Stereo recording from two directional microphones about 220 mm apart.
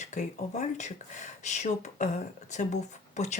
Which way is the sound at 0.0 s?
30° left (ahead or behind).